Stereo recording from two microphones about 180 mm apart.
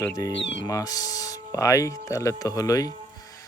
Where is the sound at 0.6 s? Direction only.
20° left (ahead or behind).